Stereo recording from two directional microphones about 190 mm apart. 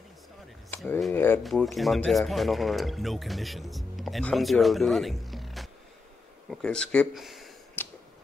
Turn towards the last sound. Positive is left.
turn(degrees=10)  # may be behind; listen again after turning